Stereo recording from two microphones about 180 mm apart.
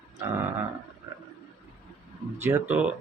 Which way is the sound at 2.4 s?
10° right (ahead or behind).